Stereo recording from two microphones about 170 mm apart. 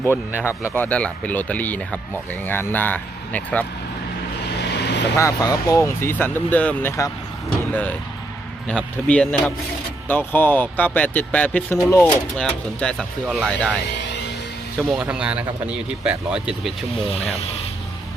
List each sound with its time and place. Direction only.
0.7 s speech: 10° left (ahead or behind)
4.4 s vehicle: 80° left
5.1 s speech: 20° left (ahead or behind); by 13.7 s 5° left (ahead or behind)
14.8 s a man's voice: centre (ahead or behind)